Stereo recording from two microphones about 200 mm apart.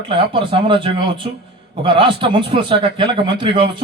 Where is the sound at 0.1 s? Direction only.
25° right (ahead or behind).